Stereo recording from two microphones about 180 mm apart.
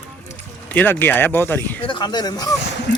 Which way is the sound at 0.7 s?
10° left (ahead or behind).